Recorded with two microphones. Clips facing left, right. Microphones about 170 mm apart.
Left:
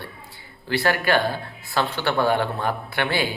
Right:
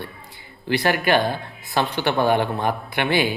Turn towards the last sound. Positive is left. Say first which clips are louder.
# right 3 dB
turn(degrees=-20)  # may be behind; listen again after turning